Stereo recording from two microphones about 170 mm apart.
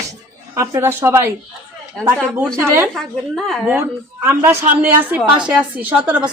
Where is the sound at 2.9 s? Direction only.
Centre (ahead or behind).